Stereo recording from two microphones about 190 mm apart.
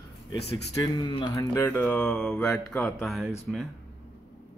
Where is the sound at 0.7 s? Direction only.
25° left (ahead or behind); by 3.3 s centre (ahead or behind).